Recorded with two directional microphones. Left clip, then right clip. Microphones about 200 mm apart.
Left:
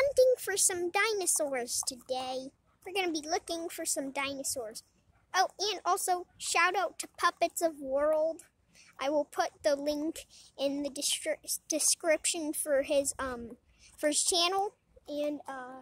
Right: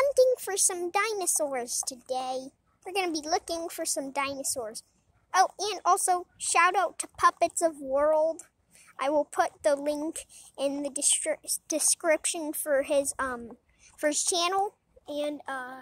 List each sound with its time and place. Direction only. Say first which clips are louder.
0.0 s a woman's voice: right 2 dB; centre (ahead or behind)